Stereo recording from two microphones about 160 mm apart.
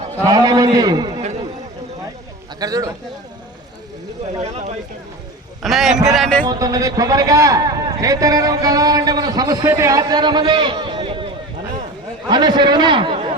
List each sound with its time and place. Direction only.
0.3 s a man's voice: 20° right (ahead or behind)
2.6 s a man's voice: 20° right (ahead or behind)
4.4 s speech: 45° right (ahead or behind)
5.6 s a man's voice: centre (ahead or behind)
6.4 s a man's voice: 25° right (ahead or behind)
12.3 s a man's voice: 25° right (ahead or behind)